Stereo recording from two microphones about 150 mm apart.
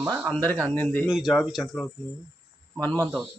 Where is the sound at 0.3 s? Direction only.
10° left (ahead or behind).